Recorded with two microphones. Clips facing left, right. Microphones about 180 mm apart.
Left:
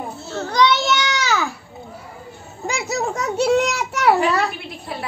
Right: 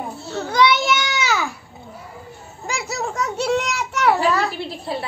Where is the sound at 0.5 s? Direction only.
5° right (ahead or behind).